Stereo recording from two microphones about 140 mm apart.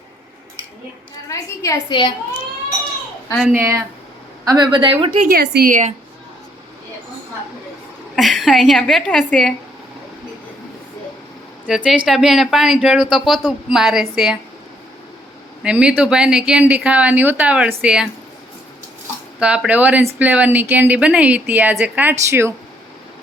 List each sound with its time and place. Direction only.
1.3 s a woman's voice: 25° left (ahead or behind)
3.4 s speech: 15° right (ahead or behind)
4.4 s a woman's voice: 30° right (ahead or behind)
5.2 s a woman's voice: 85° right
8.1 s speech: centre (ahead or behind)
11.6 s speech: 5° right (ahead or behind)
15.6 s speech: 5° right (ahead or behind)
19.4 s speech: 10° right (ahead or behind)